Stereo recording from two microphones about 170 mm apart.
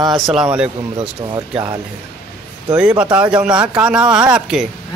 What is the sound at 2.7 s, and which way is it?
Speech, 5° right (ahead or behind).